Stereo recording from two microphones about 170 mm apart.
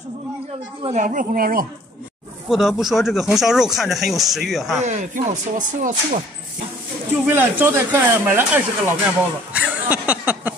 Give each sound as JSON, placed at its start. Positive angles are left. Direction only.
{"t": 1.0, "sound": "speech", "side_deg": -55}
{"t": 2.5, "sound": "speech", "side_deg": 0}
{"t": 4.8, "sound": "speech", "side_deg": -45}
{"t": 7.2, "sound": "speech", "side_deg": -10}